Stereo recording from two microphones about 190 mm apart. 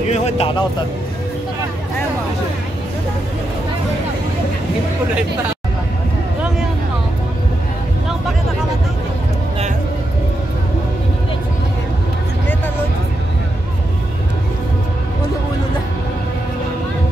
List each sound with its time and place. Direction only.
0.1 s speech: 30° left (ahead or behind)